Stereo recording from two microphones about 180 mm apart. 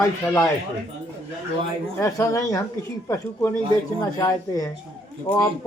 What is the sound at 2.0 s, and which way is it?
Speech, 15° left (ahead or behind).